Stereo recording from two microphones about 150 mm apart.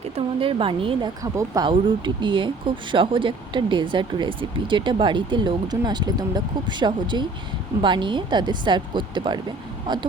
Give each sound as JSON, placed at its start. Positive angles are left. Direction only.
{"t": 0.0, "sound": "speech", "side_deg": -35}
{"t": 1.2, "sound": "speech", "side_deg": -25}